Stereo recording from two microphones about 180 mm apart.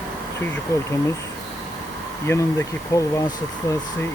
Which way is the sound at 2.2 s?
15° left (ahead or behind).